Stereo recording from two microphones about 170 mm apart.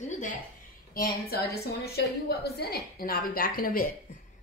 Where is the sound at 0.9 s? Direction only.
60° left (ahead or behind).